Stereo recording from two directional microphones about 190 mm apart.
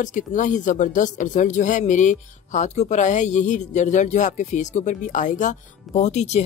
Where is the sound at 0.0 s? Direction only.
40° left (ahead or behind).